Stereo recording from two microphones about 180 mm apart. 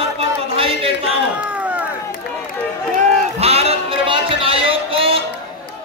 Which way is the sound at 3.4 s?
35° right (ahead or behind).